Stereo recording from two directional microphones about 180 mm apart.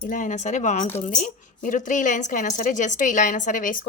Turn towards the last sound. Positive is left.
turn(degrees=45)  # may be behind; listen again after turning